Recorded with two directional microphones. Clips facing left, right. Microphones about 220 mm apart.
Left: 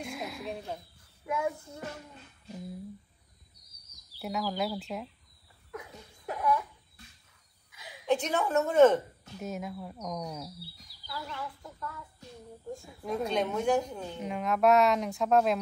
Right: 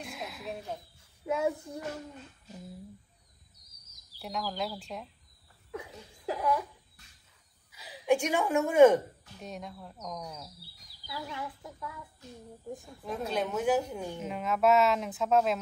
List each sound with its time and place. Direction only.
0.0 s a sound: centre (ahead or behind)
1.2 s speech: 25° right (ahead or behind)
4.2 s a woman's voice: 5° left (ahead or behind)
5.7 s a sound: 25° right (ahead or behind)
8.1 s a woman's voice: 10° right (ahead or behind)
9.4 s a woman's voice: 5° left (ahead or behind)
11.1 s a woman's voice: 15° right (ahead or behind)
12.8 s a woman's voice: centre (ahead or behind)